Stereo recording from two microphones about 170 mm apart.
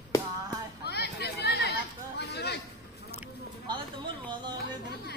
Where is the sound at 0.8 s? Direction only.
75° left (ahead or behind).